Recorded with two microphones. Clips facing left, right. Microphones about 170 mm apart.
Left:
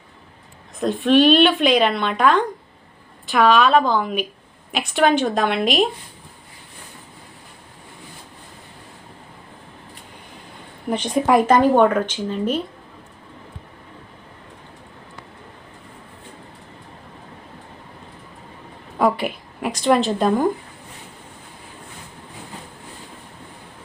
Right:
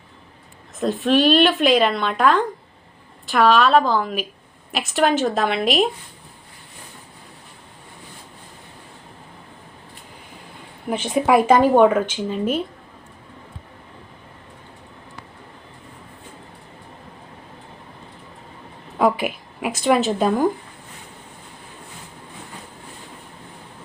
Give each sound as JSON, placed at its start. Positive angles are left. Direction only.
{"t": 0.8, "sound": "speech", "side_deg": 0}
{"t": 10.8, "sound": "speech", "side_deg": -5}
{"t": 18.9, "sound": "a woman's voice", "side_deg": -5}